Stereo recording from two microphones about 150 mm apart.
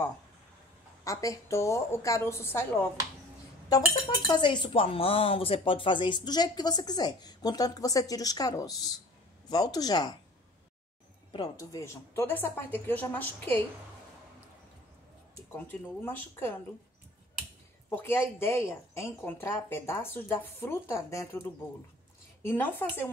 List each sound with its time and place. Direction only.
1.0 s a woman's voice: 20° left (ahead or behind)
4.3 s a woman's voice: 30° left (ahead or behind)
11.3 s speech: 25° left (ahead or behind)
15.5 s speech: 15° left (ahead or behind)
17.8 s speech: 15° left (ahead or behind)